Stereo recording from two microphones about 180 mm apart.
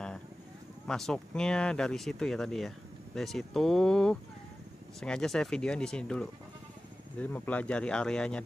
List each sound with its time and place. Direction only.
0.8 s speech: 5° left (ahead or behind)